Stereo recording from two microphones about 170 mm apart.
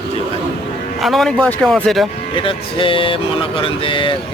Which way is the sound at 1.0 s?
Centre (ahead or behind).